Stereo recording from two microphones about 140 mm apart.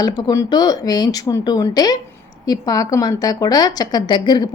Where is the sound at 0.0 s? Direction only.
30° left (ahead or behind).